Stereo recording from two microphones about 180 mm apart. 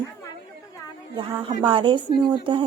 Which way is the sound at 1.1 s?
25° right (ahead or behind).